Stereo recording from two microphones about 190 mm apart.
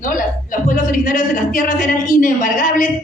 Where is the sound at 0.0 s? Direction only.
45° left (ahead or behind).